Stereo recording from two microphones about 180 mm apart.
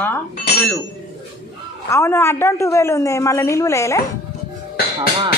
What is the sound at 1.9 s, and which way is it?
A woman's voice, 15° left (ahead or behind).